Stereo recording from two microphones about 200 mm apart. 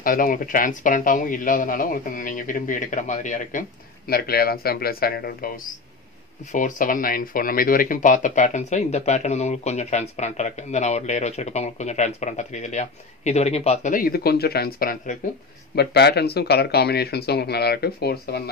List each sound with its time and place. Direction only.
0.0 s speech: 45° left (ahead or behind)
4.1 s speech: 50° left (ahead or behind)